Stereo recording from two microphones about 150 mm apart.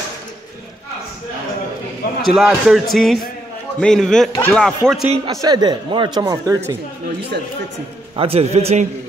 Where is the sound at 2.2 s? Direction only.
Centre (ahead or behind).